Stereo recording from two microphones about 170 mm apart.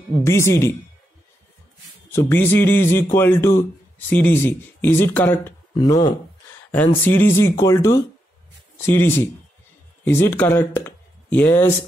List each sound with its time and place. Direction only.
0.2 s speech: 15° left (ahead or behind)
2.1 s speech: 15° left (ahead or behind)